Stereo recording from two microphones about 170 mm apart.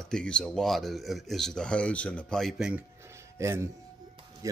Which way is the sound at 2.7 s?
15° right (ahead or behind).